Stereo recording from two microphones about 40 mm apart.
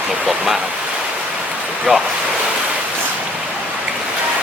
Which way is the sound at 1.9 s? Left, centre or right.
Right.